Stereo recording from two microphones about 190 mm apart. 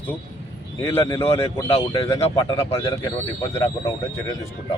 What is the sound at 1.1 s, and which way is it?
Speech, 30° left (ahead or behind).